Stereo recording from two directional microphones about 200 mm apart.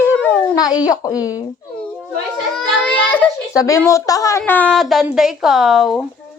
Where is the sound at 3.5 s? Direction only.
15° left (ahead or behind).